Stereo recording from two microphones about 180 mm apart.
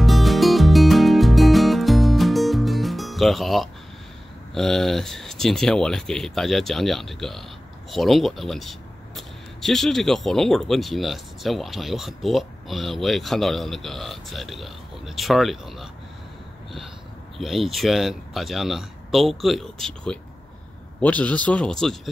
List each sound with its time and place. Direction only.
0.0 s music: centre (ahead or behind)
4.6 s speech: centre (ahead or behind)
17.4 s speech: centre (ahead or behind)